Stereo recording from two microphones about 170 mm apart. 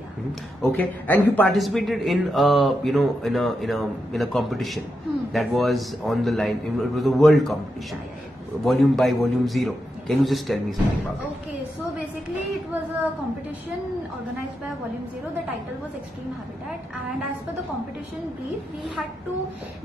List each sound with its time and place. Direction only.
0.6 s speech: 5° left (ahead or behind)
8.6 s speech: centre (ahead or behind)